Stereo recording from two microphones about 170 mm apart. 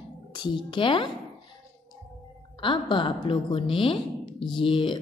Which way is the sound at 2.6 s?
30° left (ahead or behind).